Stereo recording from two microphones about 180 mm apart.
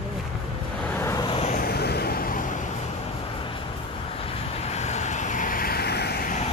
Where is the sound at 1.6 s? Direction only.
60° left (ahead or behind).